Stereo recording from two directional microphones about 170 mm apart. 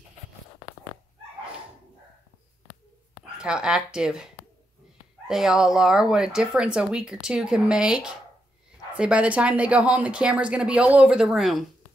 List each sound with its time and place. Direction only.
3.3 s speech: 5° right (ahead or behind)
5.3 s speech: 5° right (ahead or behind)